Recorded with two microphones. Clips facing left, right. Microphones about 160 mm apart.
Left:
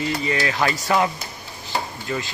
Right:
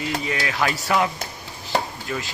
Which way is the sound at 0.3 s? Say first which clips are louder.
Left 2 dB; 5° right (ahead or behind).